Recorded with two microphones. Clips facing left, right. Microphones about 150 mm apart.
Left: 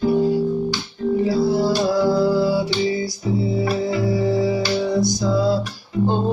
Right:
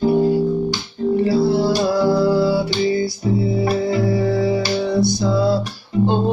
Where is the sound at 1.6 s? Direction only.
Centre (ahead or behind).